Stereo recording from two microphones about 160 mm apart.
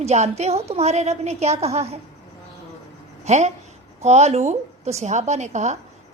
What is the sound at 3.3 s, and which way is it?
A woman's voice, 45° right (ahead or behind).